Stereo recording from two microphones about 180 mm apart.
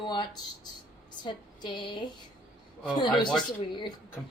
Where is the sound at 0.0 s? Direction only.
25° left (ahead or behind).